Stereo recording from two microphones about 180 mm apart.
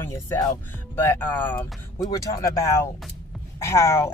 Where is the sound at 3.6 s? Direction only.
15° left (ahead or behind).